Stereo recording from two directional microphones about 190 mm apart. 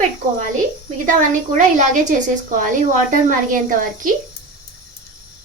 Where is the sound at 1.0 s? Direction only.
40° right (ahead or behind).